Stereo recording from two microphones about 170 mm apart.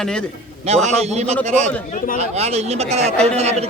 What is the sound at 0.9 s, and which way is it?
A man's voice, 40° right (ahead or behind).